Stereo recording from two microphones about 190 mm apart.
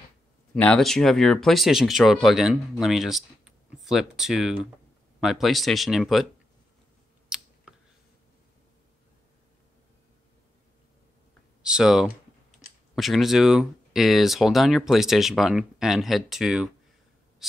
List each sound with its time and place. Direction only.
0.6 s speech: 5° left (ahead or behind)
7.2 s a sound: 5° right (ahead or behind)
11.6 s speech: 5° right (ahead or behind)
12.1 s typing: 40° left (ahead or behind)
12.9 s speech: centre (ahead or behind)
17.4 s writing: centre (ahead or behind)